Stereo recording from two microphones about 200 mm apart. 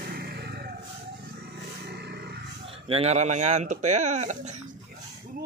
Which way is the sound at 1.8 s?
55° right (ahead or behind).